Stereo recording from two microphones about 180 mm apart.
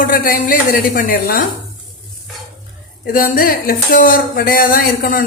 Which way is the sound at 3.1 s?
50° left (ahead or behind).